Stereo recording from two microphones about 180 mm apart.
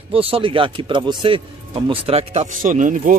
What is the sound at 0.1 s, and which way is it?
Speech, 30° right (ahead or behind).